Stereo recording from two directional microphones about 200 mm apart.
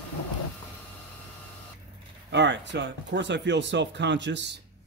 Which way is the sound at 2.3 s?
60° right (ahead or behind).